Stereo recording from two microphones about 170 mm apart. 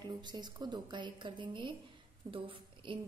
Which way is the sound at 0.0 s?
25° right (ahead or behind).